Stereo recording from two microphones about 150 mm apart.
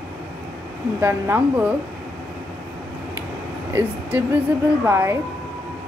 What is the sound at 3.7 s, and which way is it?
Speech, 15° right (ahead or behind).